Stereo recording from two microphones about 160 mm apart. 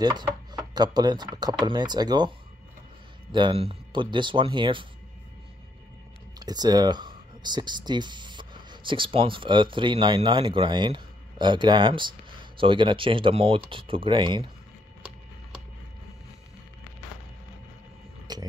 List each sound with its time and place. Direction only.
0.0 s speech: 25° right (ahead or behind)
6.4 s speech: 25° right (ahead or behind)
18.3 s a sound: 25° right (ahead or behind)